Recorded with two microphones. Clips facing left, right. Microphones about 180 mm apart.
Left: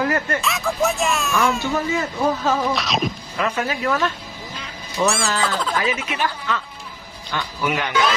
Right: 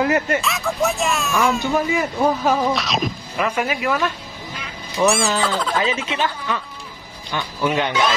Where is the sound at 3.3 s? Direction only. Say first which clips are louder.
Right 3 dB; 15° right (ahead or behind).